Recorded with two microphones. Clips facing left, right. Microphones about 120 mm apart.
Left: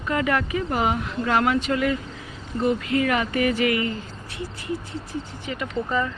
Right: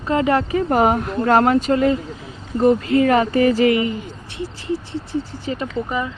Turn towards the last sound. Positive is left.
turn(degrees=-15)  # may be behind; listen again after turning